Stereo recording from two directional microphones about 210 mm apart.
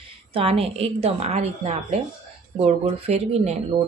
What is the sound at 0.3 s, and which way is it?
Speech, 25° right (ahead or behind).